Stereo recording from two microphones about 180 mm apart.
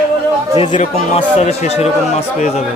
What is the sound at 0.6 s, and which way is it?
Speech, 35° left (ahead or behind).